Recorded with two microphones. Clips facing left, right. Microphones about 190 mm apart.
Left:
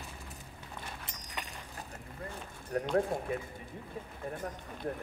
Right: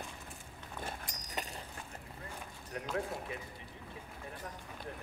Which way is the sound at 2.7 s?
40° left (ahead or behind).